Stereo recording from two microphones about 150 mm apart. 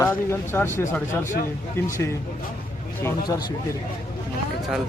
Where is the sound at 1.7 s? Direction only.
20° left (ahead or behind).